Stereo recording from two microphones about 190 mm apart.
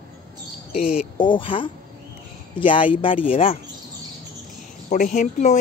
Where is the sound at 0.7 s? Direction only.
5° right (ahead or behind).